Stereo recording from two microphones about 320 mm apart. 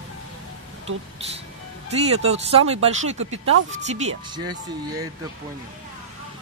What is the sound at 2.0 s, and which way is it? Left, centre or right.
Speech, centre.